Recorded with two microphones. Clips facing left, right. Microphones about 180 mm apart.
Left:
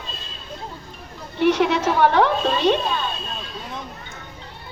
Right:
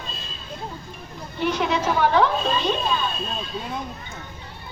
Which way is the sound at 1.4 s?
70° left (ahead or behind).